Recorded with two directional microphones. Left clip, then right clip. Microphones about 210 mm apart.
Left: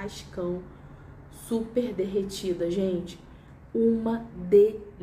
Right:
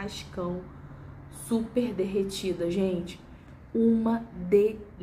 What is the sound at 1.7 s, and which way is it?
Speech, 5° right (ahead or behind).